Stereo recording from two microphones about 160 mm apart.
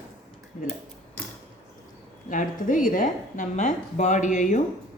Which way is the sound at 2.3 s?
55° left (ahead or behind).